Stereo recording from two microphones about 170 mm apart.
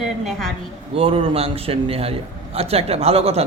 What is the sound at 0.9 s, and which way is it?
Speech, 35° right (ahead or behind).